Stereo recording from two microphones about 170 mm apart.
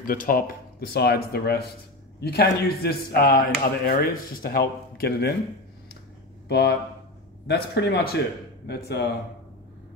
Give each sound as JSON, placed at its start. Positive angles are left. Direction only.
{"t": 0.0, "sound": "speech", "side_deg": 55}
{"t": 6.5, "sound": "speech", "side_deg": 80}